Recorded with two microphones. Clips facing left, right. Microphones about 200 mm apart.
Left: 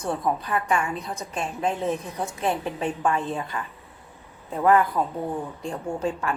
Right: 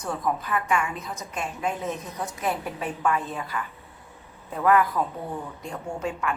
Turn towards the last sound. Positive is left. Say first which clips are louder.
# left 2 dB
turn(degrees=30)  # may be behind; listen again after turning